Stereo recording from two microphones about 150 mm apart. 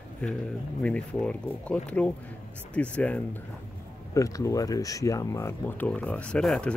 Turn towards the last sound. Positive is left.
turn(degrees=5)  # may be behind; listen again after turning